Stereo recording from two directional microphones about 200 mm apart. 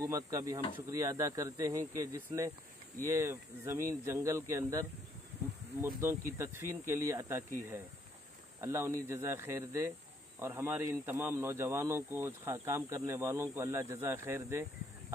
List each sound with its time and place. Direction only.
0.0 s a man's voice: 15° right (ahead or behind)
5.9 s a man's voice: 15° right (ahead or behind)